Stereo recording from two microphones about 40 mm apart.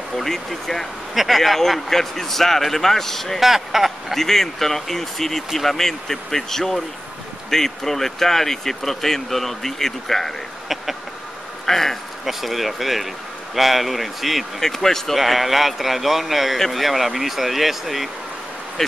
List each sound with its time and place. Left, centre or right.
0.1 s speech: centre
1.1 s speech: centre
3.3 s speech: centre
4.1 s speech: centre
11.6 s speech: centre
12.3 s speech: centre
14.6 s speech: centre
15.1 s speech: centre
18.8 s speech: centre